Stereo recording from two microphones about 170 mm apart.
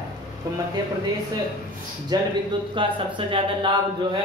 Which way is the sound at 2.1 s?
25° right (ahead or behind).